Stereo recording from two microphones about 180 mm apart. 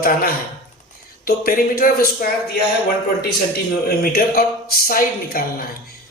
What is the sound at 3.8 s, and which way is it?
Speech, 55° left (ahead or behind).